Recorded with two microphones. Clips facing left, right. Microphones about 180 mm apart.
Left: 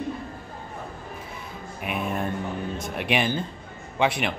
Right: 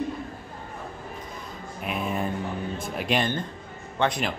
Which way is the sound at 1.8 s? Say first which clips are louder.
Even; 5° left (ahead or behind).